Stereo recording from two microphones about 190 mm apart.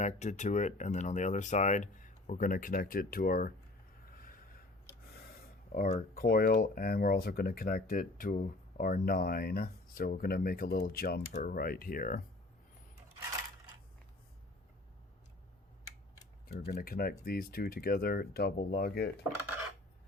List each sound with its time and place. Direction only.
0.0 s speech: 40° left (ahead or behind)
4.1 s a sound: 50° left (ahead or behind)
6.1 s speech: 50° left (ahead or behind)
16.5 s speech: 55° left (ahead or behind)